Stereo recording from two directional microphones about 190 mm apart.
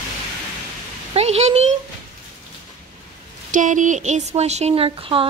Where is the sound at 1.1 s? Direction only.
35° right (ahead or behind).